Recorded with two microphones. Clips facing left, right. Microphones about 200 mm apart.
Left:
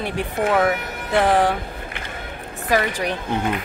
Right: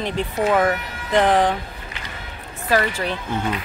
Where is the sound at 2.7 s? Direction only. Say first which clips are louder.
Even; 15° left (ahead or behind).